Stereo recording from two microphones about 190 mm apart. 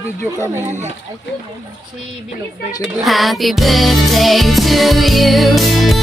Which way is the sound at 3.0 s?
Centre (ahead or behind).